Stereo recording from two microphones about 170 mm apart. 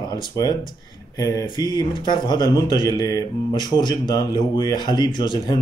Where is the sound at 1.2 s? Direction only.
20° left (ahead or behind).